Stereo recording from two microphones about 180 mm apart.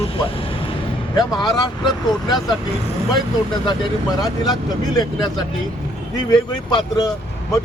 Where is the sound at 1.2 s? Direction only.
20° left (ahead or behind).